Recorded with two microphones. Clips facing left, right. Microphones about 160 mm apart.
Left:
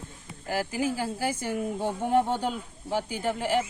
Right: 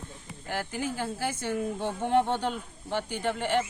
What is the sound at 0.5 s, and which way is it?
Speech, 10° left (ahead or behind).